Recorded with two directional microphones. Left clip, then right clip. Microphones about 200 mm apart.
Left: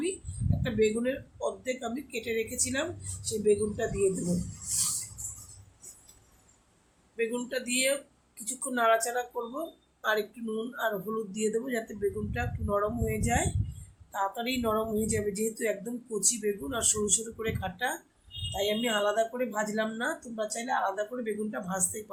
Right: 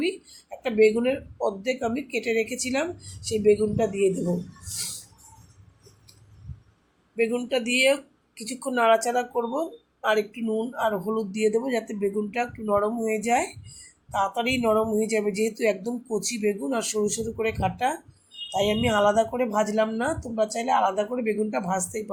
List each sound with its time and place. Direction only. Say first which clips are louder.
0.6 s speech: right 8 dB; 25° right (ahead or behind)
7.2 s speech: right 7 dB; 20° right (ahead or behind)